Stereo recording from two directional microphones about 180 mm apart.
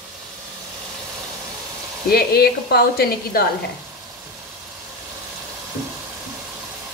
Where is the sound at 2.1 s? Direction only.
60° left (ahead or behind).